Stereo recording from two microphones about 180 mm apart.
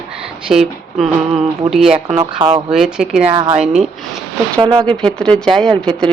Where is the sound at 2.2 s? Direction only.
25° right (ahead or behind).